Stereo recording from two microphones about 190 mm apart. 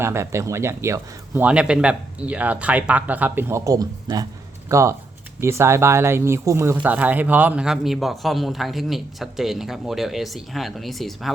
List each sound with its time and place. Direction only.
0.0 s a man's voice: 15° right (ahead or behind)